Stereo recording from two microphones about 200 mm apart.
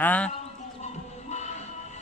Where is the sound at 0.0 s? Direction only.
10° left (ahead or behind).